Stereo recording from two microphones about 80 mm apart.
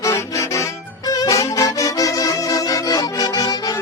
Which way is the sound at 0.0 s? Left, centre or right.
Left.